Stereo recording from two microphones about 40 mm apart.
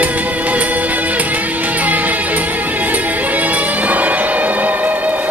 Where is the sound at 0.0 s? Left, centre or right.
Right.